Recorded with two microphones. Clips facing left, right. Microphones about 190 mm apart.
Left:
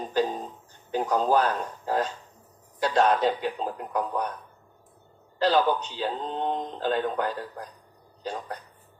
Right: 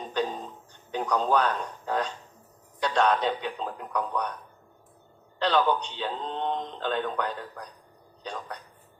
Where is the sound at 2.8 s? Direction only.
5° left (ahead or behind).